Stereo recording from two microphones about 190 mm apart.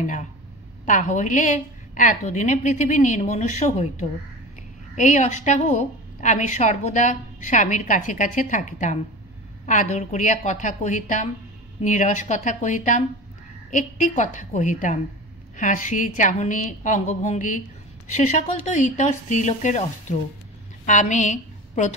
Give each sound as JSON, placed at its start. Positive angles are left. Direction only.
{"t": 0.0, "sound": "a woman's voice", "side_deg": 40}